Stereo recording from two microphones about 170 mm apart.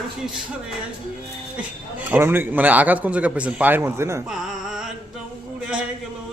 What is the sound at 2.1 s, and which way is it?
A man's voice, 15° right (ahead or behind).